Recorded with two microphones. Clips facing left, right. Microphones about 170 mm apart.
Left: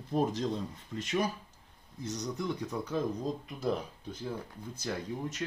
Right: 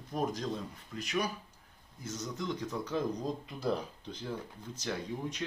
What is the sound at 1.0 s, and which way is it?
Speech, 25° left (ahead or behind).